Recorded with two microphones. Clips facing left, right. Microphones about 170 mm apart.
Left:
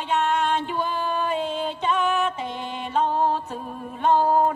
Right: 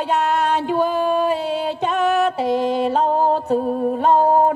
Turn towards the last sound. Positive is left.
turn(degrees=-55)  # may be behind; listen again after turning